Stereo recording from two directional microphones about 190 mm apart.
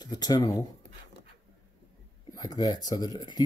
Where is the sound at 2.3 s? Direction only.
20° left (ahead or behind).